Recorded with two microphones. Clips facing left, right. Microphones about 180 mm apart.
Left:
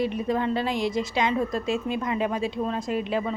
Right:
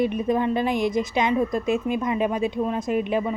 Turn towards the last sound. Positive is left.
turn(degrees=-15)  # may be behind; listen again after turning